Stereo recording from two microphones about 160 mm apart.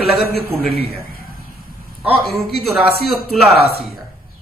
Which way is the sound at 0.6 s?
70° left (ahead or behind).